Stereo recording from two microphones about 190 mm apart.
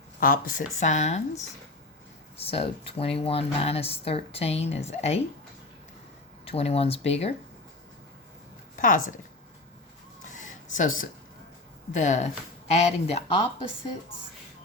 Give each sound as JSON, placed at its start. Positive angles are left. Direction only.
{"t": 0.2, "sound": "speech", "side_deg": 45}
{"t": 2.4, "sound": "speech", "side_deg": 30}
{"t": 6.4, "sound": "speech", "side_deg": 30}
{"t": 8.7, "sound": "speech", "side_deg": 45}
{"t": 10.3, "sound": "a sound", "side_deg": 40}
{"t": 11.9, "sound": "speech", "side_deg": 40}